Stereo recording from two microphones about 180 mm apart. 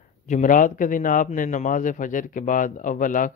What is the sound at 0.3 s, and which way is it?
Speech, 45° left (ahead or behind).